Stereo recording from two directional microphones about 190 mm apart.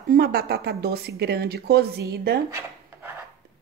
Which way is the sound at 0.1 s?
50° right (ahead or behind).